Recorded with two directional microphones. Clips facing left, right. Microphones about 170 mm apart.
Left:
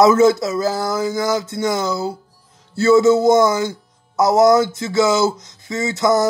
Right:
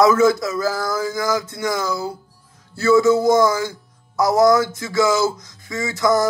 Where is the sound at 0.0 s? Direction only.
25° left (ahead or behind).